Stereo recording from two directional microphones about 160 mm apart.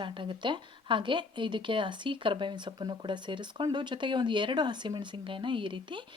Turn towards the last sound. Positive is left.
turn(degrees=-30)  # may be behind; listen again after turning